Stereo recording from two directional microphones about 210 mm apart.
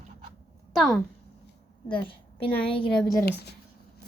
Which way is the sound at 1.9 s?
25° left (ahead or behind).